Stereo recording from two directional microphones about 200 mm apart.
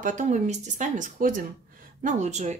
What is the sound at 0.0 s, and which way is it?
Speech, 40° right (ahead or behind).